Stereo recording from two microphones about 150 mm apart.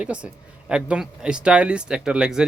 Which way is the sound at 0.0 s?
5° right (ahead or behind).